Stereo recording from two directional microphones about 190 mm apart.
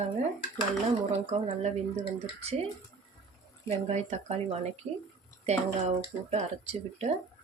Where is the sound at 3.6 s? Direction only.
35° right (ahead or behind).